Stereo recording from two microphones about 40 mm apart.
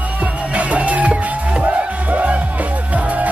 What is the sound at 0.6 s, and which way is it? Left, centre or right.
Music, right.